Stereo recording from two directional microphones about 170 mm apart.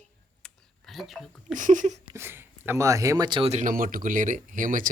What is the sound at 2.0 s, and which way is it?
Speech, 15° right (ahead or behind).